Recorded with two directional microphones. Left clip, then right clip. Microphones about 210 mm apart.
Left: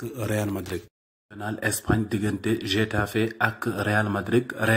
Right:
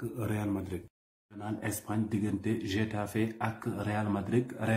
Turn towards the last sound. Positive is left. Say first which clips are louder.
# left 9 dB
turn(degrees=20)  # may be behind; listen again after turning